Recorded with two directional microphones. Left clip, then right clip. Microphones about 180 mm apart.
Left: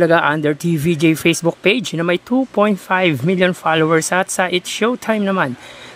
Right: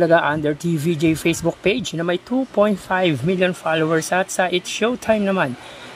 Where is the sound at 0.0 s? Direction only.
15° left (ahead or behind).